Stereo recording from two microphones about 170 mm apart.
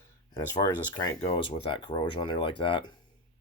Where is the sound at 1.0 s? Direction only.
25° left (ahead or behind).